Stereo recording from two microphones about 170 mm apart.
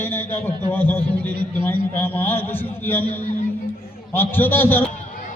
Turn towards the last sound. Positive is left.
turn(degrees=10)  # may be behind; listen again after turning